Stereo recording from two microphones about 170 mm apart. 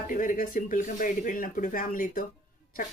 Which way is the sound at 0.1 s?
55° left (ahead or behind).